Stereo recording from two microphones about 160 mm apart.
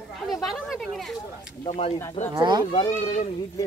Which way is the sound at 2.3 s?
25° right (ahead or behind).